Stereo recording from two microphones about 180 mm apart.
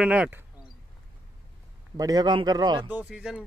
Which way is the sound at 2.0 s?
20° right (ahead or behind).